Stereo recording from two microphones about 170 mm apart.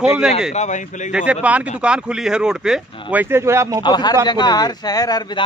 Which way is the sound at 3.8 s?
25° left (ahead or behind).